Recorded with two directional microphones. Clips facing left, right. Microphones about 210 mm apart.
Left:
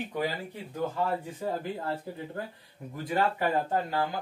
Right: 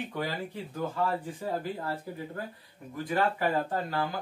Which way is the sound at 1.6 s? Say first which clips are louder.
Left 1 dB; 20° left (ahead or behind).